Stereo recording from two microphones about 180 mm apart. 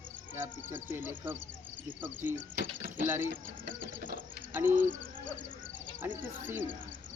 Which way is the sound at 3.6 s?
50° right (ahead or behind).